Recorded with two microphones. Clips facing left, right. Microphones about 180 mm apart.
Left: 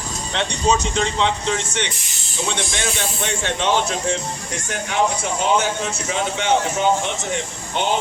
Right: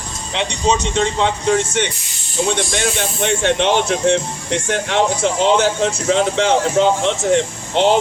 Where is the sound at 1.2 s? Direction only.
45° right (ahead or behind).